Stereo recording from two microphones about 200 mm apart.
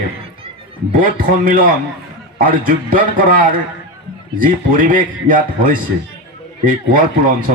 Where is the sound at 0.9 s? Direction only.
45° right (ahead or behind).